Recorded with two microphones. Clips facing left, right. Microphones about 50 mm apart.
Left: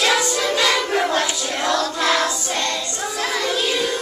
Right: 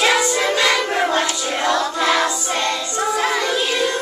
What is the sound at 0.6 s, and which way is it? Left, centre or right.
Child singing, centre.